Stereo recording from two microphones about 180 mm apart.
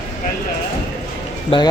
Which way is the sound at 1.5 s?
30° left (ahead or behind).